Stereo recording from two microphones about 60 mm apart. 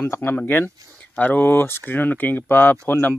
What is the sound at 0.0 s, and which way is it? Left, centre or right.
Speech, left.